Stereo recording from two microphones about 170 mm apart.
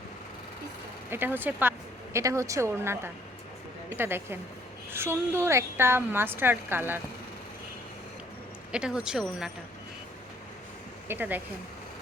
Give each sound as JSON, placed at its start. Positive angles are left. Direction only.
{"t": 1.1, "sound": "a woman's voice", "side_deg": -10}
{"t": 8.7, "sound": "speech", "side_deg": -5}
{"t": 11.1, "sound": "a woman's voice", "side_deg": -10}